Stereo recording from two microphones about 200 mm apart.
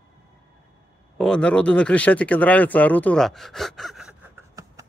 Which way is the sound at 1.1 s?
5° left (ahead or behind).